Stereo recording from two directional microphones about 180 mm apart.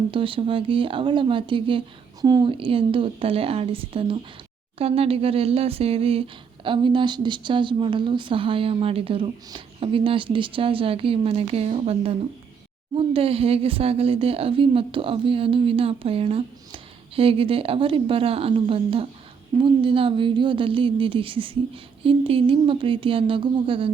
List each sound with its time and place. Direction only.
0.1 s speech: 30° right (ahead or behind)